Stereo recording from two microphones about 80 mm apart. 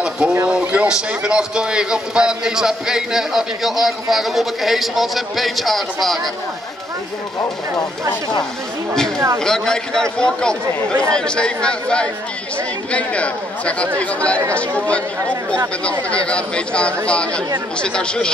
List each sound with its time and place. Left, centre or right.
0.0 s a sound: centre
0.5 s a man's voice: centre
9.4 s speech: centre
15.8 s speech: centre